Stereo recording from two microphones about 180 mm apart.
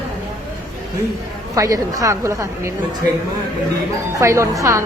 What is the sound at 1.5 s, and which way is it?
A woman's voice, 20° right (ahead or behind).